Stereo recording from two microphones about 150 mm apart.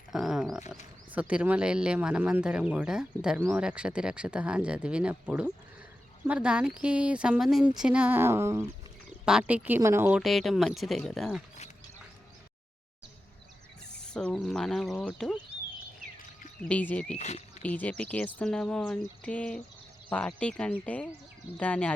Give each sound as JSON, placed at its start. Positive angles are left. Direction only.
{"t": 0.1, "sound": "a sound", "side_deg": -5}
{"t": 1.1, "sound": "speech", "side_deg": -10}
{"t": 9.2, "sound": "speech", "side_deg": -5}
{"t": 10.1, "sound": "speech", "side_deg": 0}
{"t": 14.0, "sound": "speech", "side_deg": 5}
{"t": 16.6, "sound": "speech", "side_deg": 10}
{"t": 17.2, "sound": "speech", "side_deg": 50}
{"t": 17.6, "sound": "speech", "side_deg": 10}